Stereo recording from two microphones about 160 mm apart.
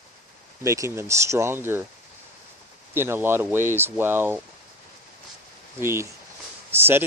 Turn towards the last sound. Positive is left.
turn(degrees=-15)  # may be behind; listen again after turning